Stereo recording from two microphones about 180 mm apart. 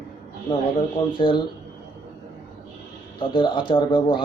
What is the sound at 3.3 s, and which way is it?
Speech, 25° left (ahead or behind).